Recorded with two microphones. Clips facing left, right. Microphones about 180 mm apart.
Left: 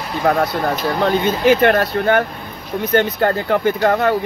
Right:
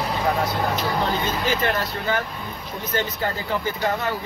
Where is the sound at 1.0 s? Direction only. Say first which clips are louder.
Left 9 dB; 65° left (ahead or behind).